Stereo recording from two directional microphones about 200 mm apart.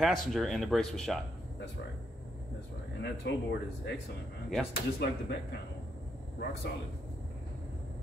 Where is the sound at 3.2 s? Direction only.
60° left (ahead or behind).